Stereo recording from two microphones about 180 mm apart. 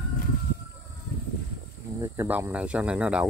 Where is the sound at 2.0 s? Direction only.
15° right (ahead or behind).